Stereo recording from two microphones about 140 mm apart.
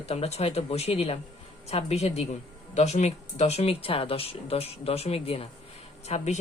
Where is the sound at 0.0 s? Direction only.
50° left (ahead or behind).